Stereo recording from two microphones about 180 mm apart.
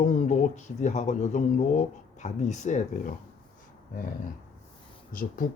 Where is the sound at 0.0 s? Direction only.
45° left (ahead or behind).